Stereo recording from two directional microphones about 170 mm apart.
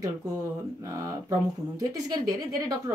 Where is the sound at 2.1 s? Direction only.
20° right (ahead or behind).